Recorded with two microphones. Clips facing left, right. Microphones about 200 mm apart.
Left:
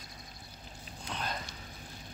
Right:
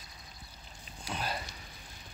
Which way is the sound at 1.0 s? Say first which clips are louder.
Right 1 dB; 10° right (ahead or behind).